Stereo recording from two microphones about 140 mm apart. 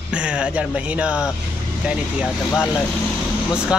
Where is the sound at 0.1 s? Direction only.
10° right (ahead or behind).